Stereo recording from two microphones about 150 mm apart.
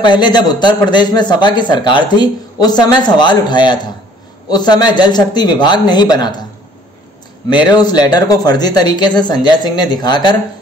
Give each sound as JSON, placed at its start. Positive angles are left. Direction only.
{"t": 0.0, "sound": "a man's voice", "side_deg": 30}
{"t": 7.4, "sound": "a man's voice", "side_deg": 30}